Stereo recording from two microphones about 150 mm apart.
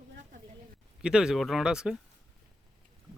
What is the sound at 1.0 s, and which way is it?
Speech, 5° right (ahead or behind).